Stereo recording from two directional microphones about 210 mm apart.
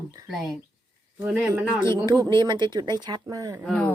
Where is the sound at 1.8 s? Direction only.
20° right (ahead or behind).